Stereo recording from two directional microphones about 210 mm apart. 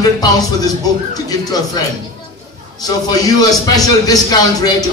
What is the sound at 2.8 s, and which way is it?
A man's voice, 20° left (ahead or behind).